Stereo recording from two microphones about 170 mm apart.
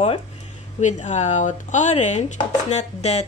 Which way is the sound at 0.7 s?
45° left (ahead or behind).